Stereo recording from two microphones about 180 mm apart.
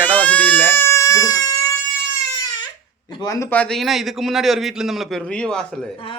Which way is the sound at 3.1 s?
20° left (ahead or behind).